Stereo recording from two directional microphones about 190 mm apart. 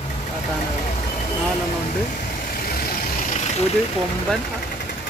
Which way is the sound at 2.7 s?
50° left (ahead or behind).